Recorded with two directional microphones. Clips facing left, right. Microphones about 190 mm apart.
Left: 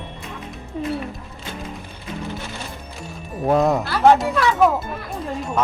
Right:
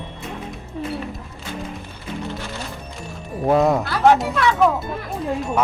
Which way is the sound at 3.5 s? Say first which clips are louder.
Right 1 dB; centre (ahead or behind).